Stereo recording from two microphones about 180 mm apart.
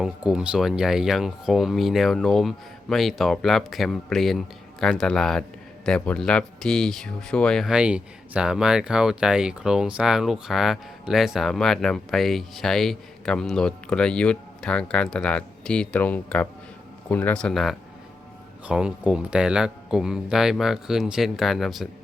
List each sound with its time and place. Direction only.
0.0 s speech: 5° right (ahead or behind)